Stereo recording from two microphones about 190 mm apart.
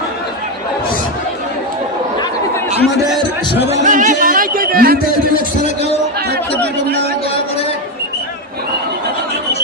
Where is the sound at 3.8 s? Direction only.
40° right (ahead or behind).